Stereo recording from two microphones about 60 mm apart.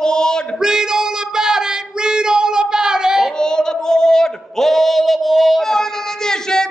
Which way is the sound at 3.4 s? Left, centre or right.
Centre.